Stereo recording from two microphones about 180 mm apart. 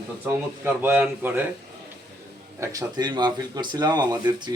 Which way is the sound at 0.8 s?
10° right (ahead or behind).